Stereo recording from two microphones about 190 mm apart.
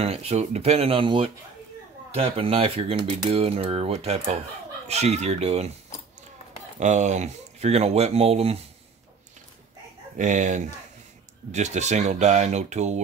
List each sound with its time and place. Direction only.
0.0 s speech: 35° right (ahead or behind)
6.8 s speech: 40° right (ahead or behind)
10.1 s speech: 40° right (ahead or behind)